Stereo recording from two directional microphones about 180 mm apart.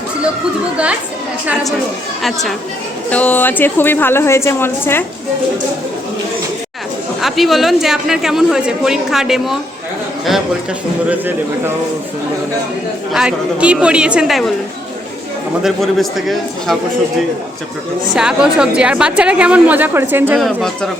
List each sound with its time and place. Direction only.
2.2 s a woman's voice: centre (ahead or behind)
7.2 s speech: centre (ahead or behind)
11.1 s a woman's voice: 10° right (ahead or behind)
13.1 s speech: 5° right (ahead or behind)
15.6 s speech: centre (ahead or behind)
18.1 s a woman's voice: 5° right (ahead or behind)
20.4 s speech: centre (ahead or behind)